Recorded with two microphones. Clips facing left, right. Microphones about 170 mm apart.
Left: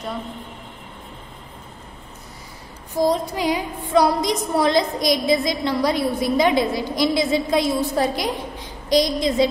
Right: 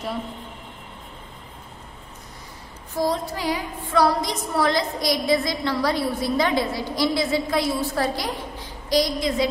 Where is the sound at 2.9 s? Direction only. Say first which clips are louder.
Left 4 dB; 15° left (ahead or behind).